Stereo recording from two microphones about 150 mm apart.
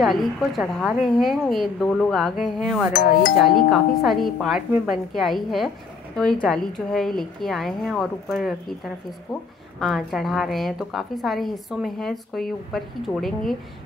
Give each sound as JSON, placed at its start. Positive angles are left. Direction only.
{"t": 0.0, "sound": "a woman's voice", "side_deg": 0}
{"t": 2.9, "sound": "music", "side_deg": 80}
{"t": 3.4, "sound": "a woman's voice", "side_deg": 0}